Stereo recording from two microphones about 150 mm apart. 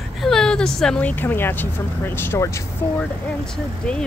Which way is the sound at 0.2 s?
5° left (ahead or behind).